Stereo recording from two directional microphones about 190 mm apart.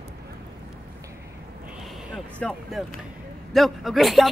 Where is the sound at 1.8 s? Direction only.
Centre (ahead or behind).